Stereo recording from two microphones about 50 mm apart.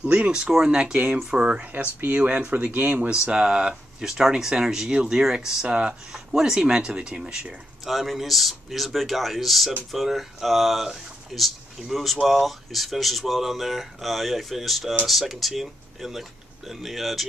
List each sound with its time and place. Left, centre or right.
0.0 s speech: right
0.7 s speech: centre
0.9 s speech: right
1.2 s speech: centre; by 3.1 s right
3.3 s speech: centre
7.8 s speech: centre